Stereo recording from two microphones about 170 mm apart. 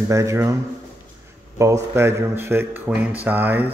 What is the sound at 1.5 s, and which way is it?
Speech, 15° right (ahead or behind).